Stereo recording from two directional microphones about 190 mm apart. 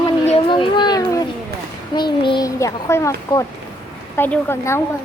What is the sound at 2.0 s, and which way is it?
A child's voice, 25° left (ahead or behind).